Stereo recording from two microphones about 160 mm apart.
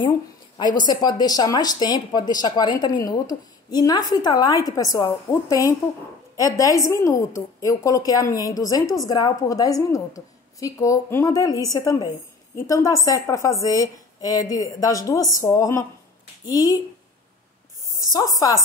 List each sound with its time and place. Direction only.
0.6 s speech: 25° left (ahead or behind)
18.1 s speech: 25° left (ahead or behind)